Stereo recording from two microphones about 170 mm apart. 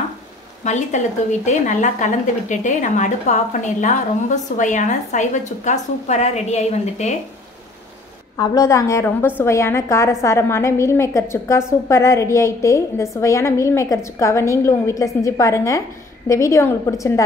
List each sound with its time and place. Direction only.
0.7 s speech: 45° left (ahead or behind)
8.4 s a woman's voice: 20° left (ahead or behind)